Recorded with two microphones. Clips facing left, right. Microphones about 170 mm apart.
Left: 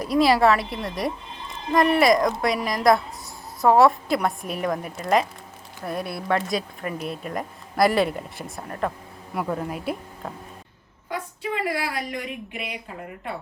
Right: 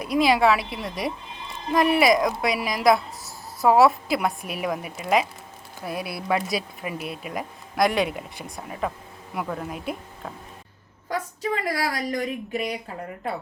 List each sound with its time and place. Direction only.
0.0 s speech: centre (ahead or behind)
11.7 s speech: 40° right (ahead or behind)